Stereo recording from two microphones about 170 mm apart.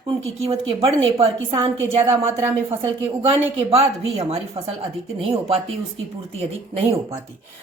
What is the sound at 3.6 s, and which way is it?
Speech, 35° right (ahead or behind).